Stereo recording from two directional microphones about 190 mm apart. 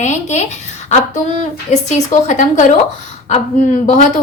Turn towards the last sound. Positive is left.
turn(degrees=40)  # may be behind; listen again after turning